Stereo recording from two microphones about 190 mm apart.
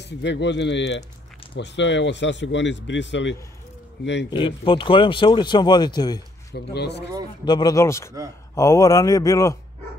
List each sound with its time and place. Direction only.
0.0 s speech: 65° left (ahead or behind)
4.3 s speech: 25° left (ahead or behind)
6.5 s speech: 60° left (ahead or behind)
7.4 s speech: 20° left (ahead or behind)